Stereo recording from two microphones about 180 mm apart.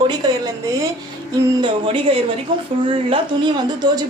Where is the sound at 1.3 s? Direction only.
25° right (ahead or behind).